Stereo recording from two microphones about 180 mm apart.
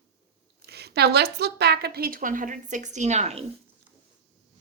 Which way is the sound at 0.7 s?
65° right (ahead or behind).